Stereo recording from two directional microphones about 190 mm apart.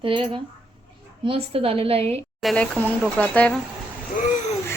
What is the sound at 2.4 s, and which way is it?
A woman's voice, 5° left (ahead or behind).